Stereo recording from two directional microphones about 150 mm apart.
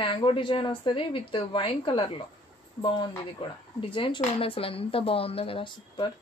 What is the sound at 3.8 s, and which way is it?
Speech, 35° left (ahead or behind).